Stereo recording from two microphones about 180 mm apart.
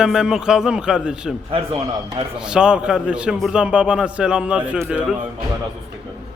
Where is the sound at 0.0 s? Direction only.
5° right (ahead or behind).